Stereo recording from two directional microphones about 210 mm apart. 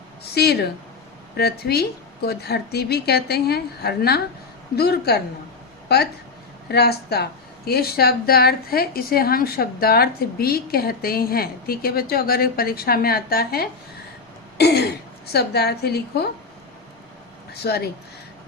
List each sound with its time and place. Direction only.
0.3 s speech: 50° left (ahead or behind)
6.7 s speech: 50° left (ahead or behind)
17.5 s speech: 50° left (ahead or behind)